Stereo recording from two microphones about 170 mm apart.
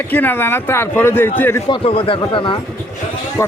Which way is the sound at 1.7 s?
30° left (ahead or behind).